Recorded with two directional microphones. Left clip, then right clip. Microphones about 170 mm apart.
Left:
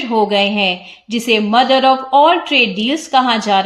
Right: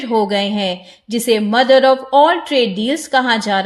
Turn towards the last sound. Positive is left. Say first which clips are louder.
# left 2 dB
turn(degrees=-50)  # may be behind; listen again after turning